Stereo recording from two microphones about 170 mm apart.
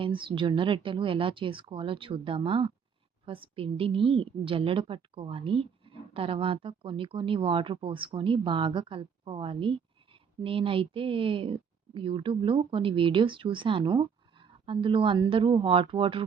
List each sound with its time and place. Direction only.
0.0 s a woman's voice: 30° right (ahead or behind)